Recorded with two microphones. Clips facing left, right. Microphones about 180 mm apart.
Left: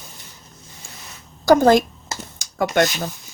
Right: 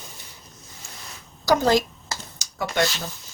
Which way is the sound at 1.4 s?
50° left (ahead or behind).